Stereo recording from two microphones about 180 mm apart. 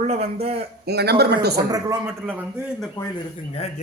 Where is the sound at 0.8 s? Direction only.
60° right (ahead or behind).